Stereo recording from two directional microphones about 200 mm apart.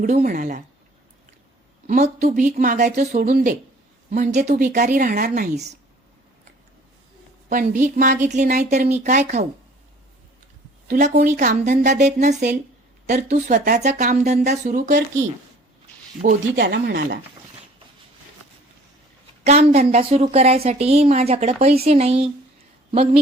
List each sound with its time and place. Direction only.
0.0 s a woman's voice: 45° right (ahead or behind)
1.9 s speech: 40° right (ahead or behind)
4.1 s speech: 35° right (ahead or behind)
7.5 s speech: 40° right (ahead or behind)
10.8 s speech: 45° right (ahead or behind)
16.6 s speech: 55° right (ahead or behind)
19.5 s speech: 30° right (ahead or behind)